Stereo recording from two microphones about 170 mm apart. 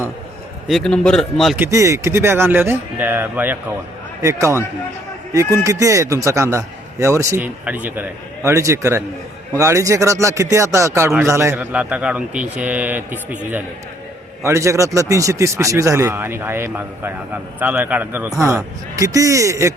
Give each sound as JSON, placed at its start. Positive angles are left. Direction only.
{"t": 0.7, "sound": "a man's voice", "side_deg": 5}
{"t": 1.5, "sound": "a man's voice", "side_deg": -15}
{"t": 5.6, "sound": "a man's voice", "side_deg": -20}